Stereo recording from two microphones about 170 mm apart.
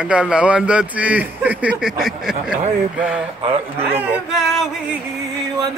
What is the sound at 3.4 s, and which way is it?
Speech, 35° right (ahead or behind).